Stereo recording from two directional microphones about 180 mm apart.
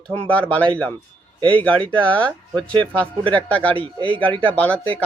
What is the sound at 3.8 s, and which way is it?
Speech, 30° right (ahead or behind).